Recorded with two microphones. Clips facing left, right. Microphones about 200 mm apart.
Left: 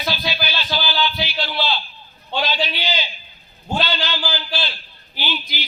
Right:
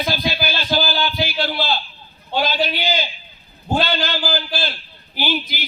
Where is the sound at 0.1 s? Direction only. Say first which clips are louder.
Right 3 dB; 50° right (ahead or behind).